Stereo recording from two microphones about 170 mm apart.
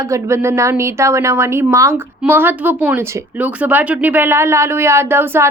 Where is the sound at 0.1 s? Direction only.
15° right (ahead or behind).